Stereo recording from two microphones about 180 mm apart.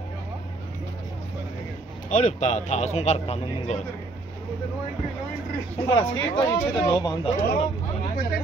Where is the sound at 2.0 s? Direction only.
45° left (ahead or behind).